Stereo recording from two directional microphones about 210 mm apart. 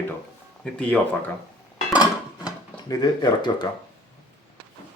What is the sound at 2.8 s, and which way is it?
Speech, 20° left (ahead or behind).